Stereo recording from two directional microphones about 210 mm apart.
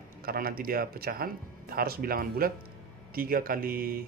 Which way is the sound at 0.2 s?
45° right (ahead or behind).